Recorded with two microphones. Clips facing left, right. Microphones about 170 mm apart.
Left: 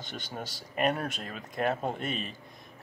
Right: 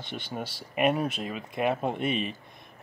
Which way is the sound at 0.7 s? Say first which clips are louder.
Right 4 dB; 5° right (ahead or behind).